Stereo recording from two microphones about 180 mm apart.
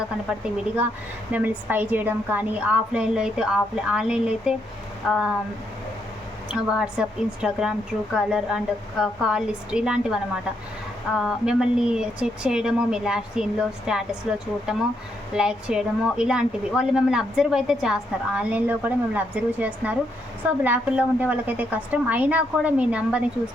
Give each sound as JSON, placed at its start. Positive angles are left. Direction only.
{"t": 0.3, "sound": "a woman's voice", "side_deg": -5}
{"t": 6.5, "sound": "a woman's voice", "side_deg": -5}